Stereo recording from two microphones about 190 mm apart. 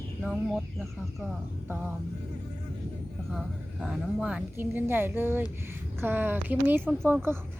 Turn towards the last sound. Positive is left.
turn(degrees=-10)  # may be behind; listen again after turning